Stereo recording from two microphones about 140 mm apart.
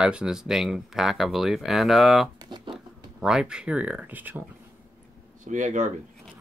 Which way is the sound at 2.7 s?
5° right (ahead or behind).